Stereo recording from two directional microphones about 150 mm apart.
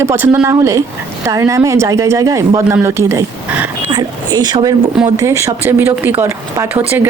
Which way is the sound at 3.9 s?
30° right (ahead or behind).